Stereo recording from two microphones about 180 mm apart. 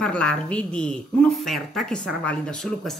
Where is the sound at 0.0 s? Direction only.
5° left (ahead or behind).